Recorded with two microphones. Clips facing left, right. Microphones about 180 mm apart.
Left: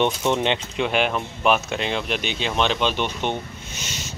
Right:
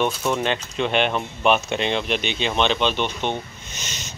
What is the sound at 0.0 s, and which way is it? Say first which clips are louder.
Speech: left 1 dB; 20° left (ahead or behind).